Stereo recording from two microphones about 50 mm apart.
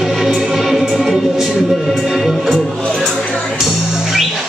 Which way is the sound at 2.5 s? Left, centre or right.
Centre.